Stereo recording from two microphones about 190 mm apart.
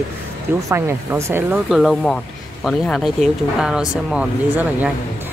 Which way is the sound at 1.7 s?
Centre (ahead or behind).